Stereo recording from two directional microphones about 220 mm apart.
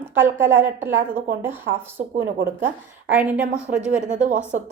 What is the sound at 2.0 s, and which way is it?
Speech, 40° right (ahead or behind).